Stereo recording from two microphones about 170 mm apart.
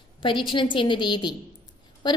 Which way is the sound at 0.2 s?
30° left (ahead or behind).